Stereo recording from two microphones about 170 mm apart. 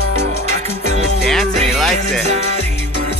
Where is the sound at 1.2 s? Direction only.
Centre (ahead or behind).